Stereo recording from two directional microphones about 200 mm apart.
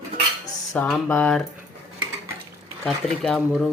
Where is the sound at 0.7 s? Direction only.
Centre (ahead or behind).